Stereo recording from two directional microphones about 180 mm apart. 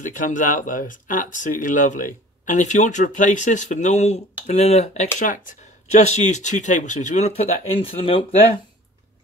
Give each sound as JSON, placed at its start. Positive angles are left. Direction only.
{"t": 0.0, "sound": "speech", "side_deg": 45}